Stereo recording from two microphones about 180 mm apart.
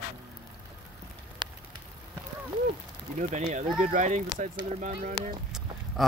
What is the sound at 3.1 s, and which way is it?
Speech, 40° right (ahead or behind).